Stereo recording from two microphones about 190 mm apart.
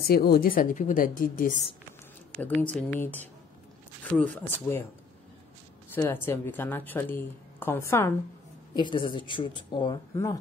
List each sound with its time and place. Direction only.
0.1 s a woman's voice: 50° left (ahead or behind)
2.4 s a woman's voice: 10° left (ahead or behind)
4.4 s a woman's voice: 10° left (ahead or behind)
5.9 s a woman's voice: 10° left (ahead or behind)
8.7 s speech: 25° left (ahead or behind)